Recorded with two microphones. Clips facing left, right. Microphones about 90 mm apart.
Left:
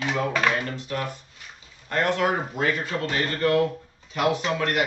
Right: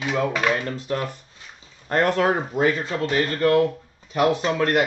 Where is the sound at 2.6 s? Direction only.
25° right (ahead or behind).